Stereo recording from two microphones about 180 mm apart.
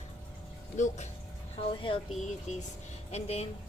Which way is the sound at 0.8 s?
40° left (ahead or behind).